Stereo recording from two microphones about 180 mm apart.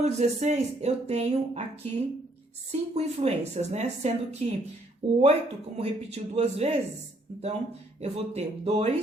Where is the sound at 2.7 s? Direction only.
35° right (ahead or behind).